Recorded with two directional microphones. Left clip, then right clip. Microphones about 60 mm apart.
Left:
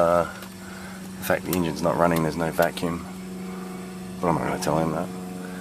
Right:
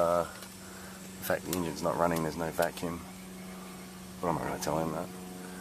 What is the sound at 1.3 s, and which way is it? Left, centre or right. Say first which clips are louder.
Speech: left 8 dB; right.